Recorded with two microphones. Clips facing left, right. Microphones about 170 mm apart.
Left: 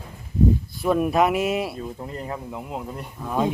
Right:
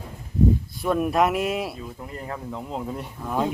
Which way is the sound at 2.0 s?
20° left (ahead or behind).